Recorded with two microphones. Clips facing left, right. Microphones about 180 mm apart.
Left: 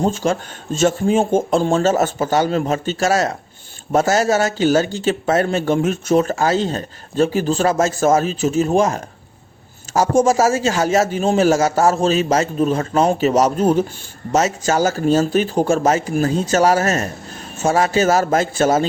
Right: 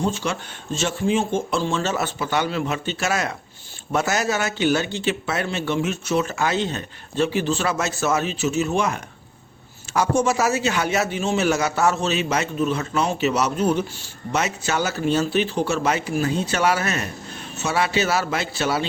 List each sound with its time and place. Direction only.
0.0 s a man's voice: 45° left (ahead or behind)
6.3 s a man's voice: 40° left (ahead or behind)
10.2 s a man's voice: 45° left (ahead or behind)